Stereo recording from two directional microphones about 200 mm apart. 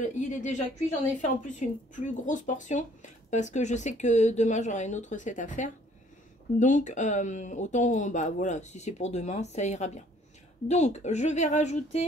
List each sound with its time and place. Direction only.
0.0 s speech: 40° left (ahead or behind)